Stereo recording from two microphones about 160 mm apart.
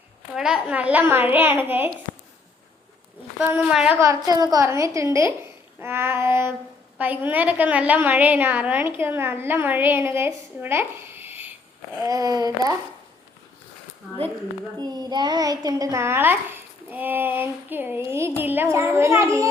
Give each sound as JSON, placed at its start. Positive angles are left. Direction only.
{"t": 0.3, "sound": "a woman's voice", "side_deg": -5}
{"t": 3.4, "sound": "a woman's voice", "side_deg": -5}
{"t": 4.0, "sound": "a woman's voice", "side_deg": -20}
{"t": 14.8, "sound": "a woman's voice", "side_deg": -25}